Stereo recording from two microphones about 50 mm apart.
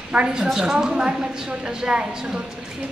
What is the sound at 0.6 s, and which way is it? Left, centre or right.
A woman's voice, centre.